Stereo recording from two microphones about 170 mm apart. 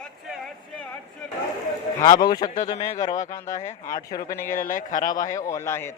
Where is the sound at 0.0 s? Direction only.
5° left (ahead or behind).